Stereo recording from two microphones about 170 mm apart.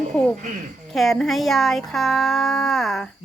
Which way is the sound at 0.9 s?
Centre (ahead or behind).